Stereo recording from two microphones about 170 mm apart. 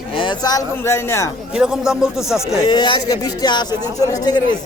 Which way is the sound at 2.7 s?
25° left (ahead or behind).